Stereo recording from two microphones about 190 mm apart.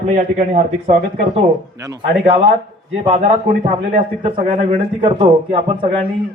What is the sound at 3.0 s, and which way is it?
A man's voice, 35° right (ahead or behind).